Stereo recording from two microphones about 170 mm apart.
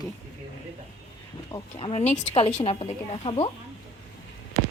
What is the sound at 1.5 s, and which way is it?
Speech, 25° left (ahead or behind).